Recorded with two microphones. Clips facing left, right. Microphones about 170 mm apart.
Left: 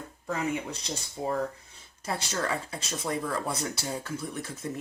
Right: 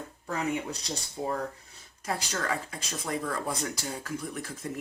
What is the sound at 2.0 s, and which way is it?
Speech, 30° left (ahead or behind).